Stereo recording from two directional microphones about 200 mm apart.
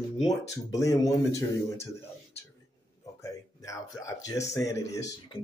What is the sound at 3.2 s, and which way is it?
Speech, 15° left (ahead or behind).